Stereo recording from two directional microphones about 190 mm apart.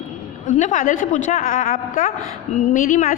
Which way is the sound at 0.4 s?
40° left (ahead or behind).